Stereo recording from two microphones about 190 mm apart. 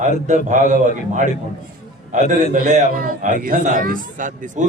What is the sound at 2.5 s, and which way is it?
A man's voice, 40° right (ahead or behind).